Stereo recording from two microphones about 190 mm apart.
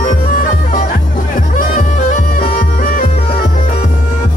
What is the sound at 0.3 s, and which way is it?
Music, 45° left (ahead or behind).